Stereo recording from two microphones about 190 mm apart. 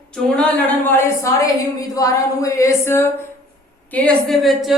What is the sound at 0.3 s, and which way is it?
A woman's voice, 5° left (ahead or behind).